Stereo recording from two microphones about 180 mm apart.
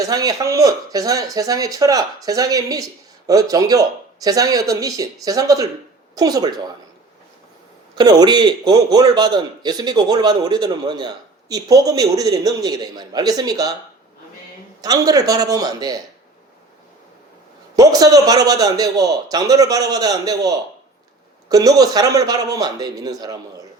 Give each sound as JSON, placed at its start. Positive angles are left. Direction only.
{"t": 0.1, "sound": "a man's voice", "side_deg": -20}
{"t": 7.9, "sound": "a man's voice", "side_deg": -20}
{"t": 14.8, "sound": "a man's voice", "side_deg": -20}
{"t": 17.7, "sound": "a man's voice", "side_deg": -20}